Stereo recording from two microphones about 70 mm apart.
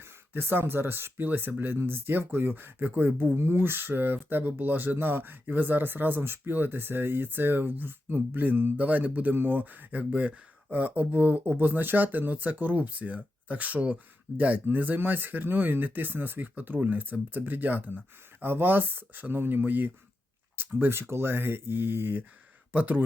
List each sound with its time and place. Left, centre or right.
0.0 s speech: right